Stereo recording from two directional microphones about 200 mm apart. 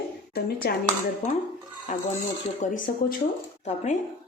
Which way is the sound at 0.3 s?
50° left (ahead or behind).